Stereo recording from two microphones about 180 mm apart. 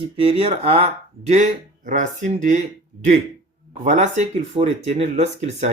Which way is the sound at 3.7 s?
40° right (ahead or behind).